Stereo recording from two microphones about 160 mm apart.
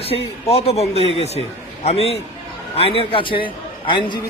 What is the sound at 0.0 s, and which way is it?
A man's voice, 40° left (ahead or behind).